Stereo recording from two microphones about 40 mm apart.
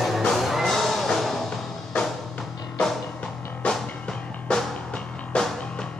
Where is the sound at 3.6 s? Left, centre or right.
Left.